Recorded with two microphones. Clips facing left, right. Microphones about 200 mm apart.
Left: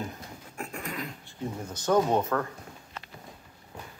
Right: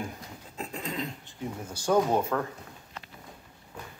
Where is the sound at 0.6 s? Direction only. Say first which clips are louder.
Right 2 dB; 20° right (ahead or behind).